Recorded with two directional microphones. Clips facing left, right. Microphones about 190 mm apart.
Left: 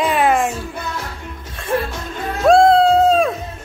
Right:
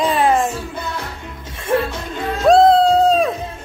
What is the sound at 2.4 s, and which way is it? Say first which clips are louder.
Music: even; centre (ahead or behind).